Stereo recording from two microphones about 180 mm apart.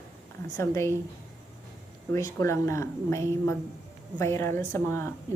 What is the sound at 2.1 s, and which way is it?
A woman's voice, 15° left (ahead or behind).